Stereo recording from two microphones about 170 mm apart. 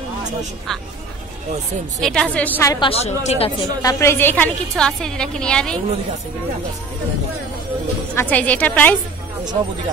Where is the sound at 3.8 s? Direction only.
15° left (ahead or behind).